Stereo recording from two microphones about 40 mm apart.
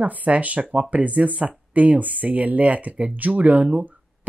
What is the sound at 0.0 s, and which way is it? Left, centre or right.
Speech, right.